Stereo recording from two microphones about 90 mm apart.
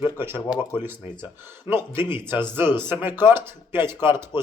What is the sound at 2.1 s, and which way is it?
Speech, 25° right (ahead or behind).